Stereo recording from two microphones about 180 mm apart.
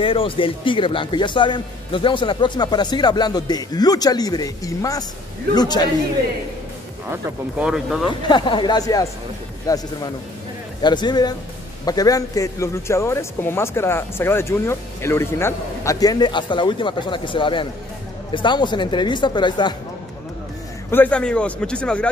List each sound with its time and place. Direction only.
0.0 s speech: 30° left (ahead or behind)
7.1 s speech: 10° right (ahead or behind)
8.2 s speech: 25° left (ahead or behind)
20.9 s speech: 10° left (ahead or behind)